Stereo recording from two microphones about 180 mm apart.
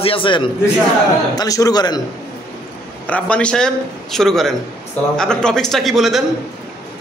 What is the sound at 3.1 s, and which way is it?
Speech, 5° left (ahead or behind).